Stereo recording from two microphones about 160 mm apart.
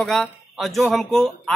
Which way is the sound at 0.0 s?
Centre (ahead or behind).